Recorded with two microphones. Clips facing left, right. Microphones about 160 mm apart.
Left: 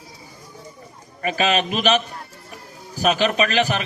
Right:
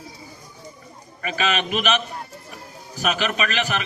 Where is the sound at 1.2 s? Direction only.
35° left (ahead or behind).